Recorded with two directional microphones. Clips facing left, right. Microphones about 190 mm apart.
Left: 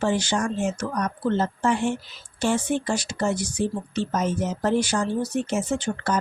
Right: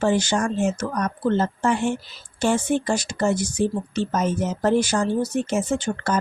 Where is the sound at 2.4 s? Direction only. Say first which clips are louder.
Right 2 dB; 45° right (ahead or behind).